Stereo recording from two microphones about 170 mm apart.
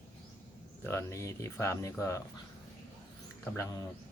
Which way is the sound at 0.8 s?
15° left (ahead or behind).